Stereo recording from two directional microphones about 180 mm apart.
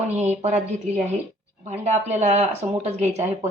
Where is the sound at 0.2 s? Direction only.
40° right (ahead or behind).